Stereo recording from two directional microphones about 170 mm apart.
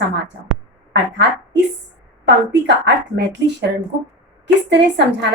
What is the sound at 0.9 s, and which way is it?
A woman's voice, 90° right.